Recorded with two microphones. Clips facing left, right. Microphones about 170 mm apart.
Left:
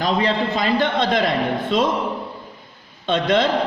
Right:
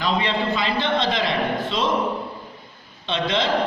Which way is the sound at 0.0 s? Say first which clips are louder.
Left 3 dB; 40° left (ahead or behind).